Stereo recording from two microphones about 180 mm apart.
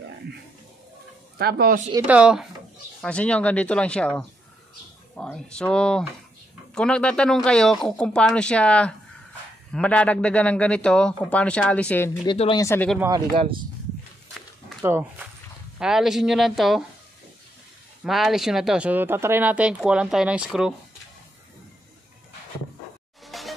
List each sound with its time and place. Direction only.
1.4 s speech: 60° right (ahead or behind)
2.0 s speech: 5° right (ahead or behind)
3.0 s a man's voice: 5° left (ahead or behind)
12.3 s speech: 25° left (ahead or behind)
12.6 s a man's voice: 10° left (ahead or behind)
13.0 s speech: 20° right (ahead or behind)
14.8 s speech: 15° right (ahead or behind)
15.8 s speech: 5° right (ahead or behind)
18.0 s speech: centre (ahead or behind)
23.2 s music: centre (ahead or behind)